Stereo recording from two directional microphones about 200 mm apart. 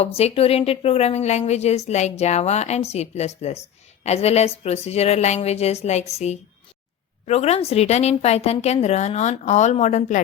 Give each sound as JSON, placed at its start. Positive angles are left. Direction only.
{"t": 0.0, "sound": "a woman's voice", "side_deg": 30}